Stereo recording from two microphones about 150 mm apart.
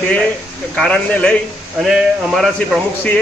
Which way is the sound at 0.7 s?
5° left (ahead or behind).